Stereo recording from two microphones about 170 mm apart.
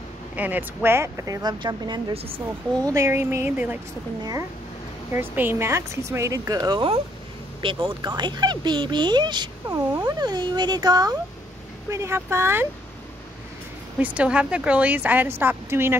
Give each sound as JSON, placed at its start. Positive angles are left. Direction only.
{"t": 0.4, "sound": "speech", "side_deg": -10}
{"t": 2.9, "sound": "a woman's voice", "side_deg": -15}
{"t": 4.2, "sound": "a woman's voice", "side_deg": -20}
{"t": 13.9, "sound": "a woman's voice", "side_deg": -10}